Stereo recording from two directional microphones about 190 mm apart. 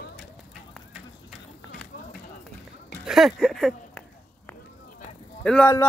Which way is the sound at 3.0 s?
Centre (ahead or behind).